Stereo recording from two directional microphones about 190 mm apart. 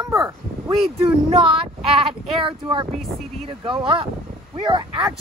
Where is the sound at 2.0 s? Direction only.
25° right (ahead or behind).